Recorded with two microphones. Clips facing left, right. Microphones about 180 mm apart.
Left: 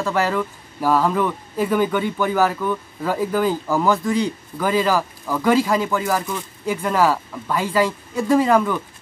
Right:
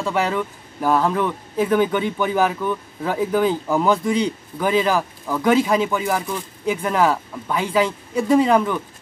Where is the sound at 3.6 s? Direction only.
20° right (ahead or behind).